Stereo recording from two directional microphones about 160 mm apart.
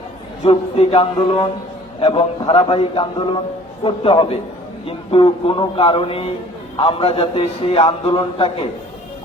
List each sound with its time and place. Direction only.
0.4 s a man's voice: 35° left (ahead or behind)